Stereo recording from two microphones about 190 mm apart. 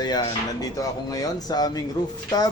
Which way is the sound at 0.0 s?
20° left (ahead or behind).